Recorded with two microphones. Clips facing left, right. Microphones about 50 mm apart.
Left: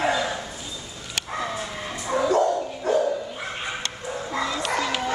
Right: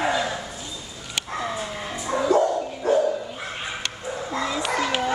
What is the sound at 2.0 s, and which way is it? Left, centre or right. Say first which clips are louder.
Bow-wow: left 1 dB; centre.